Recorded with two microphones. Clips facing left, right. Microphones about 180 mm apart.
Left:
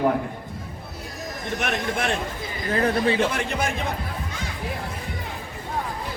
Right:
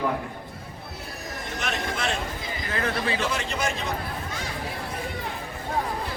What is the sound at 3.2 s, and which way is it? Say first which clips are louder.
Speech: left 4 dB; 55° left (ahead or behind).